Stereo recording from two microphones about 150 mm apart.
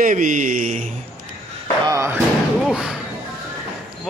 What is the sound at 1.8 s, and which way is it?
Speech, 20° right (ahead or behind).